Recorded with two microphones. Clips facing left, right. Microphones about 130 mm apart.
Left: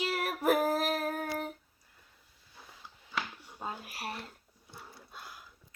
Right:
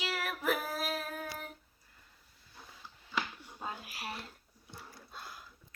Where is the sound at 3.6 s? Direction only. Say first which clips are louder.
Left 2 dB; 35° left (ahead or behind).